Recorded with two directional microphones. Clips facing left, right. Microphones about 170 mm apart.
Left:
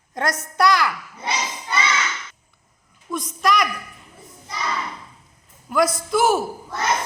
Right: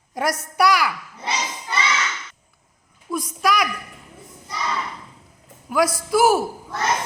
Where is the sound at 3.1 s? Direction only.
10° right (ahead or behind).